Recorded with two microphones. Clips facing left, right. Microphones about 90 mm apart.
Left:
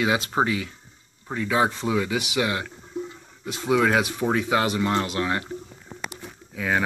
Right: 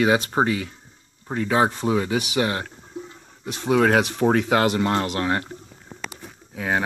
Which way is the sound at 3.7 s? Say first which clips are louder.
Right 2 dB; 50° right (ahead or behind).